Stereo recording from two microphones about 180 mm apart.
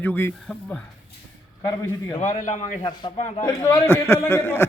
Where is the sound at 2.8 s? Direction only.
25° left (ahead or behind).